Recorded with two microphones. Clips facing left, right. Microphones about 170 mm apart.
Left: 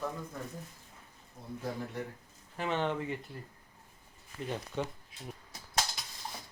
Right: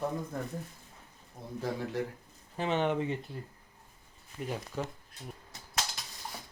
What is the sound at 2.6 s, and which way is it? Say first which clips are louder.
Speech: right 3 dB; 20° right (ahead or behind).